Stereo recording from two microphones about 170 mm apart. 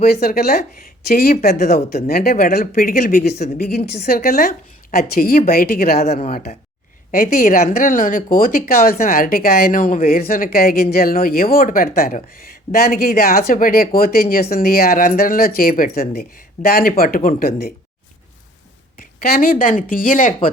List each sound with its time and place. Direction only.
0.0 s speech: 65° left (ahead or behind)
3.3 s speech: 40° left (ahead or behind)
4.0 s speech: 60° left (ahead or behind)
6.1 s speech: 40° left (ahead or behind)
7.1 s speech: 60° left (ahead or behind)
19.2 s speech: 60° left (ahead or behind)